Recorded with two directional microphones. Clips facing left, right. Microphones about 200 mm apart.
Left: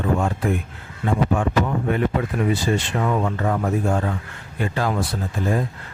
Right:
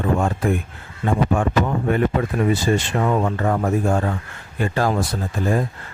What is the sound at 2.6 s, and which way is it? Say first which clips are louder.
A man's voice: right 2 dB; 45° right (ahead or behind).